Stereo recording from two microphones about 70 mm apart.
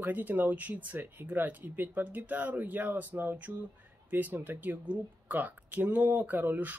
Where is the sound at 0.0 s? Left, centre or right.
Right.